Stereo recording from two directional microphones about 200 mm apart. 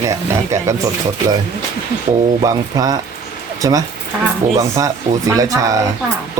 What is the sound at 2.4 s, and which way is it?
Speech, 20° right (ahead or behind).